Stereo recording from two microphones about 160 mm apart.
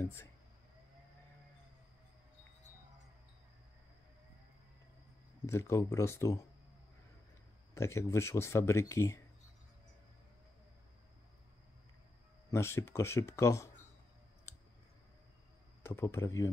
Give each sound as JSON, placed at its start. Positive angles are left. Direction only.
{"t": 0.0, "sound": "speech", "side_deg": 15}
{"t": 5.5, "sound": "speech", "side_deg": 15}
{"t": 7.7, "sound": "speech", "side_deg": 15}
{"t": 12.4, "sound": "speech", "side_deg": 15}
{"t": 15.8, "sound": "speech", "side_deg": 15}